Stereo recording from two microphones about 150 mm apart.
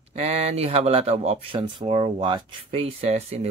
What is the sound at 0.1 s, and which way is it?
Speech, 40° right (ahead or behind).